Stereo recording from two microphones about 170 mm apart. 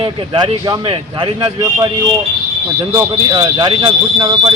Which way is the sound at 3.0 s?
25° right (ahead or behind).